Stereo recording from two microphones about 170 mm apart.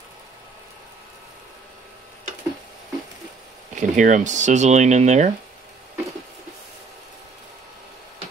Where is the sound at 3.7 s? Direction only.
45° right (ahead or behind).